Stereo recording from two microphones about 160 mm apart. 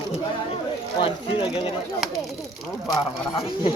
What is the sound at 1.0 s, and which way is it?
Speech, 35° left (ahead or behind).